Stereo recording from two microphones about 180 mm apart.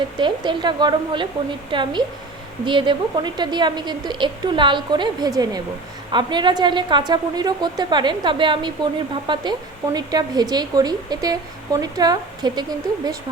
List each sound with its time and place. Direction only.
0.2 s a woman's voice: 25° right (ahead or behind)